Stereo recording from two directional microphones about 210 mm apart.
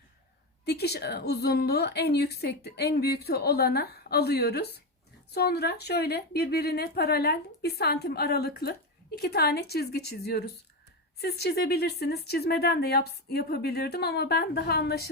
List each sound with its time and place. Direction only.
0.6 s a woman's voice: 50° left (ahead or behind)